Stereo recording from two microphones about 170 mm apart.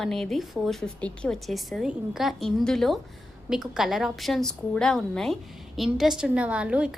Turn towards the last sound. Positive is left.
turn(degrees=-5)  # may be behind; listen again after turning